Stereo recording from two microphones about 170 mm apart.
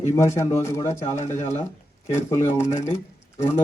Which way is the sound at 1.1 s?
45° left (ahead or behind).